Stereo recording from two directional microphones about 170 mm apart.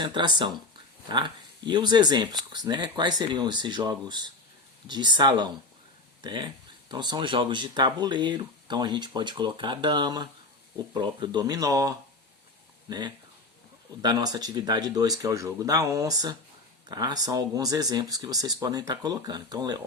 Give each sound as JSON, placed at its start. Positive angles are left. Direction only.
{"t": 0.0, "sound": "speech", "side_deg": -25}
{"t": 14.0, "sound": "speech", "side_deg": -25}